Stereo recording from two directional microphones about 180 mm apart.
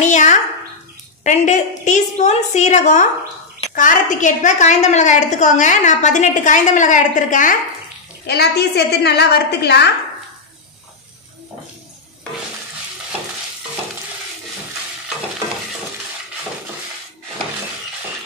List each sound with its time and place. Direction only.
0.0 s a child's voice: 40° left (ahead or behind)
8.3 s a woman's voice: 65° left (ahead or behind)